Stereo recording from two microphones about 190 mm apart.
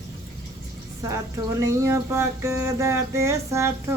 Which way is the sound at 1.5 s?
15° right (ahead or behind).